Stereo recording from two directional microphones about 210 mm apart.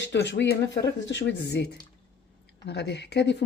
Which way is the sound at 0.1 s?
55° left (ahead or behind).